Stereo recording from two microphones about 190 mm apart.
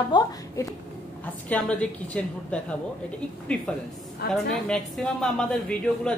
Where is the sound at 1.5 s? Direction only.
5° left (ahead or behind).